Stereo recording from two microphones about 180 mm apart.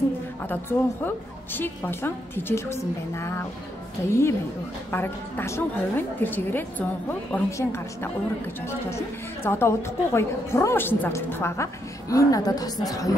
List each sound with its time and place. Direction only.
0.5 s a woman's voice: 10° left (ahead or behind)